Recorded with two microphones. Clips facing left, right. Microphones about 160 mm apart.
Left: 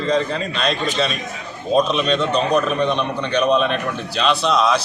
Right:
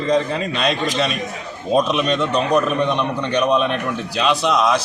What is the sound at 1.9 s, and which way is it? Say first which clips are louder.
A man's voice: even; 10° right (ahead or behind).